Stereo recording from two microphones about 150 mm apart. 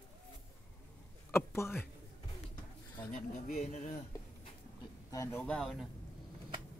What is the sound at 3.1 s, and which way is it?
Speech, 60° left (ahead or behind).